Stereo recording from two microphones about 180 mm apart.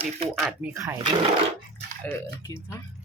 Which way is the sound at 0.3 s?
Centre (ahead or behind).